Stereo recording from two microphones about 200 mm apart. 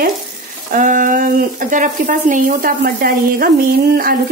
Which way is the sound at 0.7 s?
40° right (ahead or behind).